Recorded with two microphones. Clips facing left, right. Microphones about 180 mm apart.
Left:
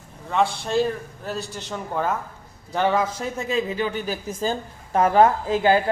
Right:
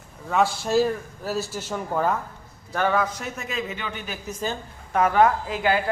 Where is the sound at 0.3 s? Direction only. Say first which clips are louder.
Even; 5° right (ahead or behind).